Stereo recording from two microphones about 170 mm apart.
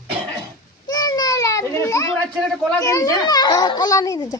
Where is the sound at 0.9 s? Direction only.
25° left (ahead or behind).